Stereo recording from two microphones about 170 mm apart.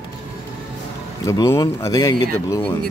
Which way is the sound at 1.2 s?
20° left (ahead or behind).